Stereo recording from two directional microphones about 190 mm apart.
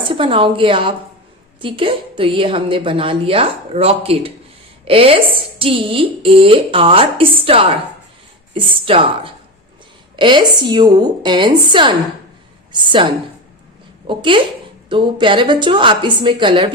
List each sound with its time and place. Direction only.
0.0 s a woman's voice: 25° right (ahead or behind)
14.1 s a woman's voice: 25° right (ahead or behind)